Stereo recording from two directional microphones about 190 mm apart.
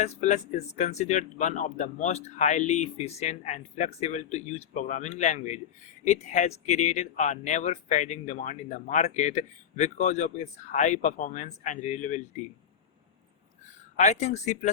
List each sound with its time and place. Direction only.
0.0 s speech: 35° left (ahead or behind)
13.9 s speech: 40° left (ahead or behind)